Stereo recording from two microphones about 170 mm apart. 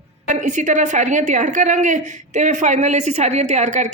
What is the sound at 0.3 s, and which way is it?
A woman's voice, 45° right (ahead or behind).